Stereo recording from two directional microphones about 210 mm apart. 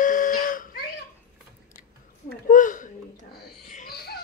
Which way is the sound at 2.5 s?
40° left (ahead or behind).